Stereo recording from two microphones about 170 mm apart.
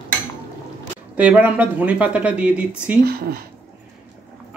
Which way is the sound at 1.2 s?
10° right (ahead or behind).